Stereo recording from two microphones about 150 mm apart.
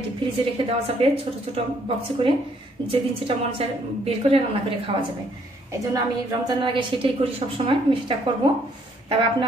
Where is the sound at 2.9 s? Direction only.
40° right (ahead or behind).